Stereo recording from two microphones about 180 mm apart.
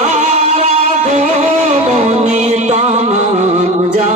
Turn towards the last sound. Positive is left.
turn(degrees=-40)  # may be behind; listen again after turning